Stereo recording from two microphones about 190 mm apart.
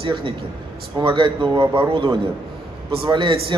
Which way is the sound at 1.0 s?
25° right (ahead or behind).